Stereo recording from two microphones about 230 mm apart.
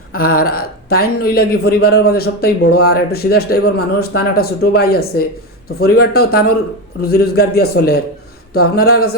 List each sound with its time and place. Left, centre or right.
0.1 s a man's voice: left